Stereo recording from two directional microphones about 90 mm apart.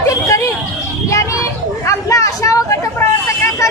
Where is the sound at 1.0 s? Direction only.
35° left (ahead or behind).